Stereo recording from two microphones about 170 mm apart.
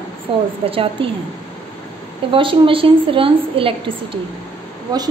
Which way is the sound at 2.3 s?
30° right (ahead or behind).